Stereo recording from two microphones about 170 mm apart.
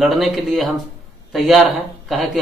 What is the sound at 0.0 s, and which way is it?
A man's voice, centre (ahead or behind).